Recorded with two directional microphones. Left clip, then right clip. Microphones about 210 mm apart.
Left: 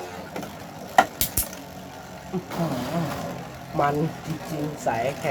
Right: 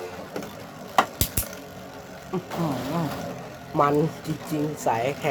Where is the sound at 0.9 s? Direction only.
Centre (ahead or behind).